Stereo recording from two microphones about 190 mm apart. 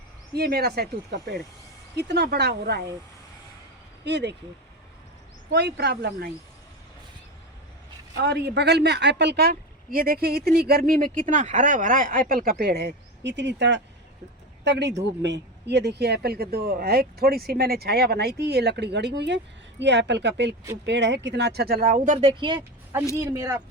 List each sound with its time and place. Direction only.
0.3 s a woman's voice: 55° right (ahead or behind)
4.0 s a woman's voice: 65° right (ahead or behind)
5.5 s a woman's voice: 60° right (ahead or behind)
8.1 s a woman's voice: 60° right (ahead or behind); by 22.3 s 40° right (ahead or behind)
22.3 s speech: 25° right (ahead or behind)